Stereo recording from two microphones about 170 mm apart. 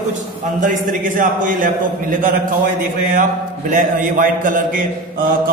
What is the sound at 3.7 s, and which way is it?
A man's voice, 50° right (ahead or behind).